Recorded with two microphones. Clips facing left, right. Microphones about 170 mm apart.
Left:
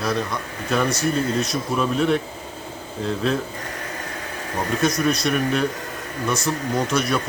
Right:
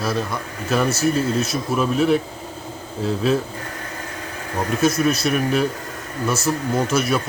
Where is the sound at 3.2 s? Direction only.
5° right (ahead or behind).